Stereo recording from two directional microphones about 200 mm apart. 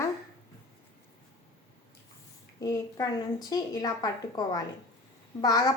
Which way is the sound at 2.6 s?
15° left (ahead or behind).